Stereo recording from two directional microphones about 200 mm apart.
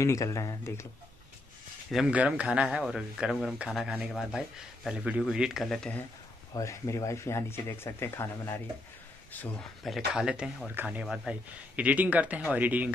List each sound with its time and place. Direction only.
0.0 s speech: 15° left (ahead or behind)
1.9 s speech: 5° right (ahead or behind)
6.5 s speech: 15° left (ahead or behind); by 12.9 s 10° right (ahead or behind)